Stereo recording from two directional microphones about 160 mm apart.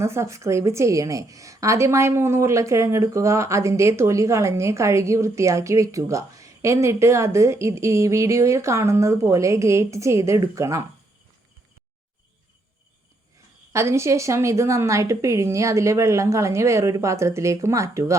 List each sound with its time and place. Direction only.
0.0 s a woman's voice: 15° right (ahead or behind)
13.7 s a woman's voice: 15° right (ahead or behind)